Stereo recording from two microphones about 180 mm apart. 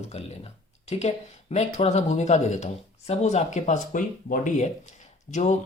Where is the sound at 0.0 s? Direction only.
35° left (ahead or behind).